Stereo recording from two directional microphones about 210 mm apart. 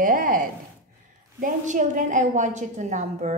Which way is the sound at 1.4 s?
35° right (ahead or behind).